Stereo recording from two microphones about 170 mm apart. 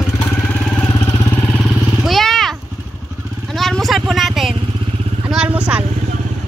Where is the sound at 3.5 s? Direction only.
Centre (ahead or behind).